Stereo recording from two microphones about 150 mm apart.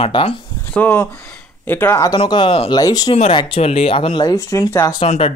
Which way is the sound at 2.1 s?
35° left (ahead or behind).